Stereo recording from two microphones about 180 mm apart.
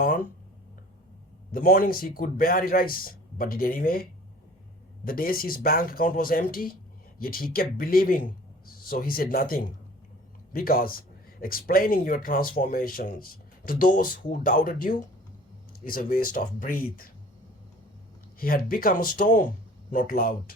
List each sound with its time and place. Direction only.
0.0 s speech: 50° left (ahead or behind)
1.5 s speech: 50° left (ahead or behind)
5.0 s speech: 55° left (ahead or behind)
18.3 s speech: 55° left (ahead or behind)